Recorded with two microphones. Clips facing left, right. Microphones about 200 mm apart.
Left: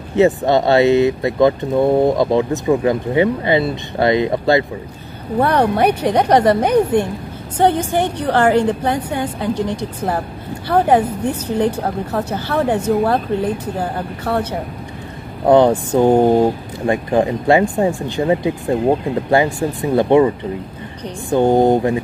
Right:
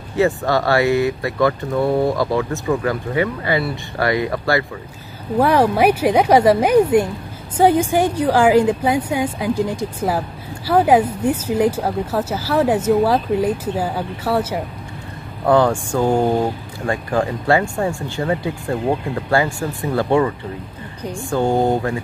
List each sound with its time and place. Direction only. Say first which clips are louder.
0.1 s speech: left 4 dB; 20° left (ahead or behind)
5.4 s speech: even; 5° right (ahead or behind)
15.4 s speech: left 4 dB; 20° left (ahead or behind)